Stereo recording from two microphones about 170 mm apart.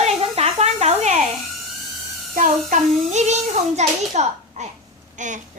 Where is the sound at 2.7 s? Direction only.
45° right (ahead or behind).